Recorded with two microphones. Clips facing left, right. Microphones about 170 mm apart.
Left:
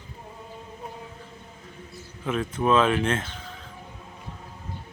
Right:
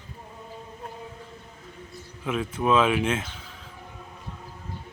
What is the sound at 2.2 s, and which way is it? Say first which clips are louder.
A man's voice: left 1 dB; 5° right (ahead or behind).